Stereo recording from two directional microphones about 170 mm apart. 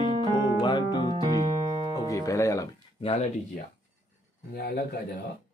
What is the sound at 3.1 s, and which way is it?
Speech, 45° left (ahead or behind).